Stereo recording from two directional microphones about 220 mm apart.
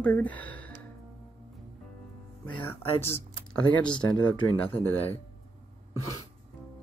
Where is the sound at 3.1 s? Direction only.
5° left (ahead or behind).